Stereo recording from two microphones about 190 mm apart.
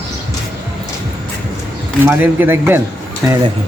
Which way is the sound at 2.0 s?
10° right (ahead or behind).